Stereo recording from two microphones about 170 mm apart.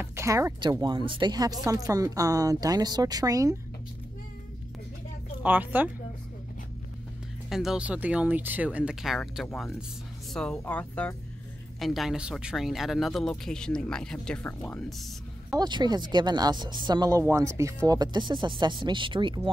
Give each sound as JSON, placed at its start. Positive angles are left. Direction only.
{"t": 0.0, "sound": "speech", "side_deg": -15}
{"t": 5.4, "sound": "speech", "side_deg": -10}
{"t": 7.4, "sound": "speech", "side_deg": -5}
{"t": 15.5, "sound": "speech", "side_deg": -25}